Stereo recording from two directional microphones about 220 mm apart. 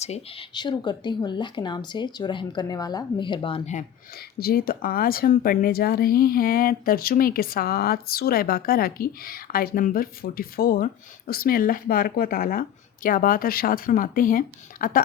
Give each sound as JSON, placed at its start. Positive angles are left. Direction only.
{"t": 0.0, "sound": "speech", "side_deg": 25}
{"t": 4.4, "sound": "speech", "side_deg": 45}